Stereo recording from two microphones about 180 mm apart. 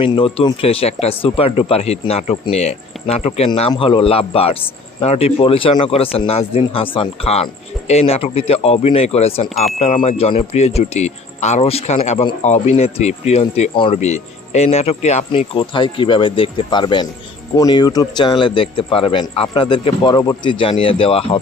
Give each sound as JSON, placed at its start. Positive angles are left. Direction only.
{"t": 0.0, "sound": "speech", "side_deg": 30}